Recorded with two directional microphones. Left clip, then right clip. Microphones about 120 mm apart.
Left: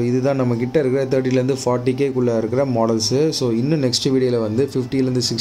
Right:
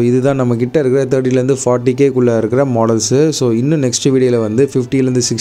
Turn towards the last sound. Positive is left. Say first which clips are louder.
# right 6 dB
turn(degrees=-55)  # may be behind; listen again after turning